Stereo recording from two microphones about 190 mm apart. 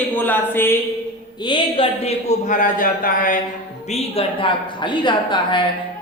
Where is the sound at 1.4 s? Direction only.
25° left (ahead or behind); by 3.4 s 45° left (ahead or behind).